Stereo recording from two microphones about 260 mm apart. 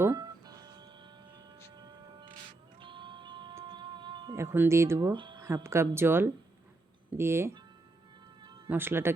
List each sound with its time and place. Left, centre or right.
0.0 s music: centre
7.1 s speech: centre
8.4 s cat: centre
8.7 s speech: centre